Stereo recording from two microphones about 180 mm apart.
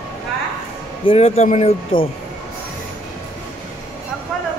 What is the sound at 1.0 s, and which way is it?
Speech, 35° left (ahead or behind).